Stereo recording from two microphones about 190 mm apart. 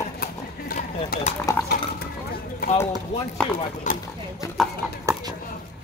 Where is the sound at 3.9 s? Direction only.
40° left (ahead or behind).